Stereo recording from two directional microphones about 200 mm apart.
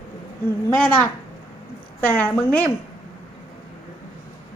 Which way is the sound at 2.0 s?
10° left (ahead or behind).